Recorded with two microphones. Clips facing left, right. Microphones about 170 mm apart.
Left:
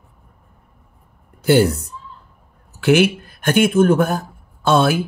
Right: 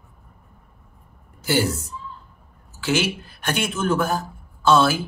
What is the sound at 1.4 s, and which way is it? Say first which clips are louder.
Speech: left 8 dB; 60° left (ahead or behind).